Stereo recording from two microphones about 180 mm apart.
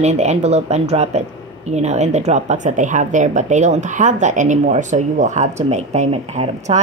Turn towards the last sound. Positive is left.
turn(degrees=-35)  # may be behind; listen again after turning